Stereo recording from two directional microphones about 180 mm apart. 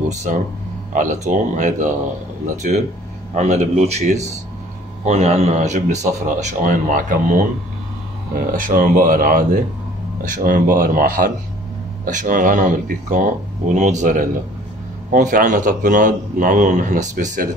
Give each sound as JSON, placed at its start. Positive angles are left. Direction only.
{"t": 0.3, "sound": "a man's voice", "side_deg": -45}
{"t": 8.5, "sound": "a man's voice", "side_deg": -50}